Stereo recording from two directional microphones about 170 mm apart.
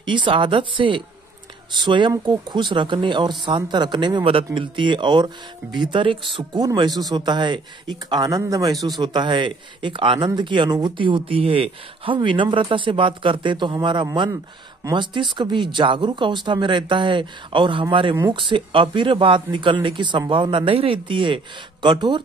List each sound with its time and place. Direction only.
0.0 s speech: 30° right (ahead or behind)